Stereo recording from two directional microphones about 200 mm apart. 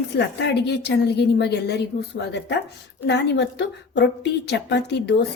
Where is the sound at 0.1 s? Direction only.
60° left (ahead or behind).